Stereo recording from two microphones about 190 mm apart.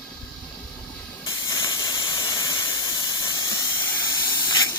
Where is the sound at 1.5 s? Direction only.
15° left (ahead or behind).